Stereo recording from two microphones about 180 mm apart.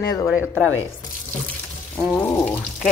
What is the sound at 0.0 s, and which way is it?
Speech, 15° left (ahead or behind).